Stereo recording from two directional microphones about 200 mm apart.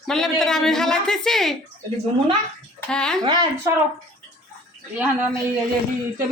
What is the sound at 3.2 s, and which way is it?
Speech, 20° right (ahead or behind).